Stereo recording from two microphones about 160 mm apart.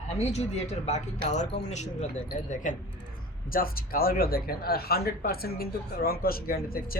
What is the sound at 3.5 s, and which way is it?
Speech, 65° left (ahead or behind).